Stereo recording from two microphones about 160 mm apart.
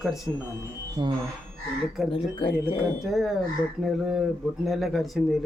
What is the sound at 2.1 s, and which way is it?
Speech, 35° left (ahead or behind).